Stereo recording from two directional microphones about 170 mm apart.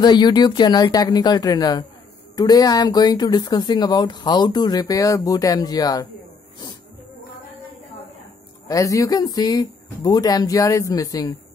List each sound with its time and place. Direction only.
0.0 s speech: 25° left (ahead or behind)
8.6 s speech: 20° left (ahead or behind)